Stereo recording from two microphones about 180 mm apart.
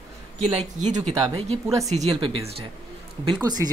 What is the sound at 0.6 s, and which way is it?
Speech, 40° right (ahead or behind).